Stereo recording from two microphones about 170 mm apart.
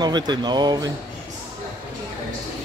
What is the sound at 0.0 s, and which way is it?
Speech, 25° right (ahead or behind).